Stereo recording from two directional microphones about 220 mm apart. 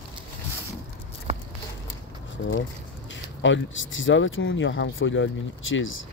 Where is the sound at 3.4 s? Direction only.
60° left (ahead or behind).